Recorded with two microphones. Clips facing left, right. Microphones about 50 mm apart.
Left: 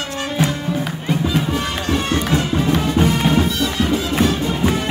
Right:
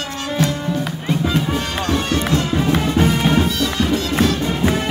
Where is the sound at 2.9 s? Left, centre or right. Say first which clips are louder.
Even; centre.